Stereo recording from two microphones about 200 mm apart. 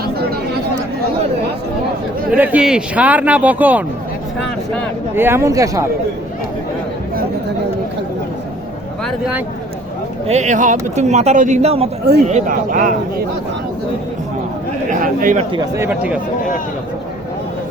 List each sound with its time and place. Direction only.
2.3 s speech: 10° right (ahead or behind)
5.1 s speech: 10° right (ahead or behind)
9.0 s speech: 5° right (ahead or behind)
10.2 s speech: 35° right (ahead or behind)
12.3 s speech: 45° right (ahead or behind)
14.8 s speech: 40° right (ahead or behind)
15.5 s speech: 15° right (ahead or behind)